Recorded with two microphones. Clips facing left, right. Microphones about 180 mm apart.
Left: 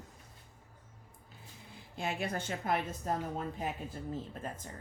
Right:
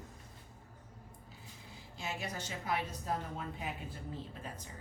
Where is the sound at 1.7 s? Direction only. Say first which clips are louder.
Left 6 dB; 55° left (ahead or behind).